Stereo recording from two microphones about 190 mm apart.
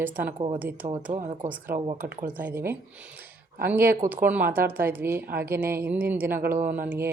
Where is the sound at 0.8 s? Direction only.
40° right (ahead or behind).